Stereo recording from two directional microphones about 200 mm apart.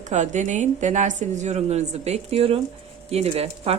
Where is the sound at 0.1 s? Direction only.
35° right (ahead or behind).